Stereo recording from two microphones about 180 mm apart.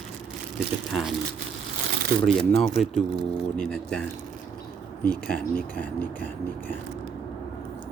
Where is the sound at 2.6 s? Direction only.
Centre (ahead or behind).